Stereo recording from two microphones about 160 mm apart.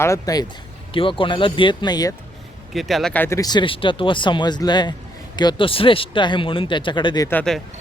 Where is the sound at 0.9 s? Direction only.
30° left (ahead or behind).